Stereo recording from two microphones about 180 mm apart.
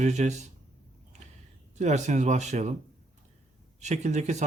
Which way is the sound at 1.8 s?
40° right (ahead or behind).